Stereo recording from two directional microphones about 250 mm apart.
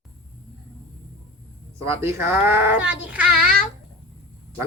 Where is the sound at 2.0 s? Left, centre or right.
Centre.